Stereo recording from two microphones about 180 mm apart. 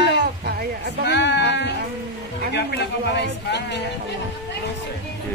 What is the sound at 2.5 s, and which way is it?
Speech, 70° left (ahead or behind).